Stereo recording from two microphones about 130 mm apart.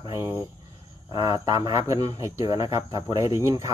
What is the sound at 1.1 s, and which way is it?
Speech, 30° right (ahead or behind).